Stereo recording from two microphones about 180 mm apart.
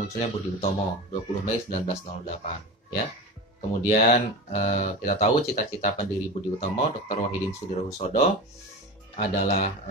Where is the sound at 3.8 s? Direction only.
40° left (ahead or behind).